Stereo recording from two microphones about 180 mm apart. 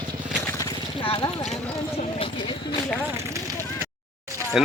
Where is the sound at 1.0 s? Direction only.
30° left (ahead or behind).